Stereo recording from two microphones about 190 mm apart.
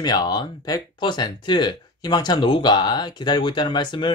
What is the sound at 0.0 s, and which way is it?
Speech, 20° left (ahead or behind).